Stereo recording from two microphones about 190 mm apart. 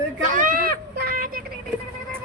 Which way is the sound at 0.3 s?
45° right (ahead or behind).